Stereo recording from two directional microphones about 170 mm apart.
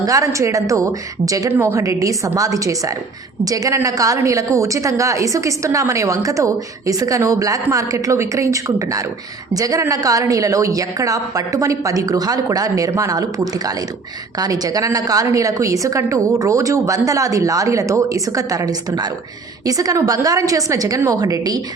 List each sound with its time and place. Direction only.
0.0 s a woman's voice: 20° right (ahead or behind)